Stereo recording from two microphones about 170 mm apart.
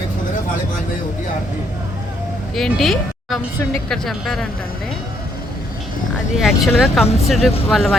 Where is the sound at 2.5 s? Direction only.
Centre (ahead or behind).